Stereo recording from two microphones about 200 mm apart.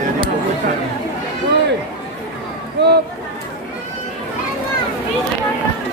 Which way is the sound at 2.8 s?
60° right (ahead or behind).